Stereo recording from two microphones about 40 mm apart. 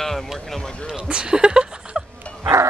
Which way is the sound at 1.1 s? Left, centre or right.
Right.